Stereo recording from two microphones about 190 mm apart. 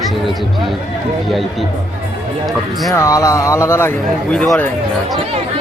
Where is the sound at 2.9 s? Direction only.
15° left (ahead or behind).